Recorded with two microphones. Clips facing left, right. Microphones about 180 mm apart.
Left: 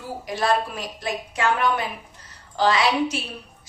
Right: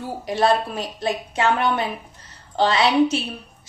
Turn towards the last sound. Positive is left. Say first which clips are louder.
# right 4 dB
turn(degrees=-25)  # may be behind; listen again after turning